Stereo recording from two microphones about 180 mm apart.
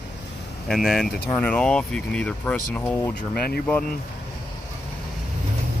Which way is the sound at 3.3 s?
60° left (ahead or behind).